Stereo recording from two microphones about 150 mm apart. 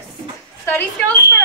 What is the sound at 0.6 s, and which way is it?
Speech, 15° left (ahead or behind).